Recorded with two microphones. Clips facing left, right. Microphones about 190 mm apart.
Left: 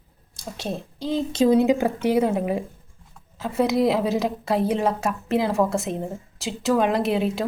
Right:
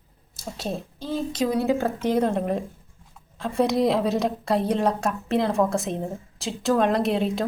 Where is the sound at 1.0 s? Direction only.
15° left (ahead or behind).